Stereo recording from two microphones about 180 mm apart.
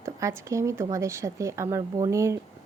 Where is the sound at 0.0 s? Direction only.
15° right (ahead or behind).